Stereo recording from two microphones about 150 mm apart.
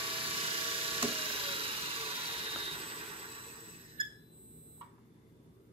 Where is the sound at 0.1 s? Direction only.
35° right (ahead or behind).